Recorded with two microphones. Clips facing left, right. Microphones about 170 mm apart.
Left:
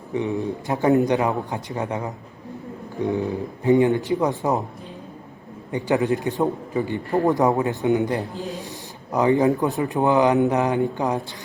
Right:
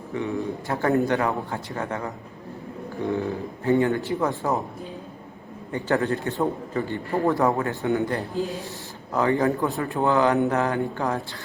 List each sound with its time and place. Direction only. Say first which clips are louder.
0.1 s a man's voice: left 3 dB; 20° left (ahead or behind)
5.7 s a man's voice: left 3 dB; 15° left (ahead or behind)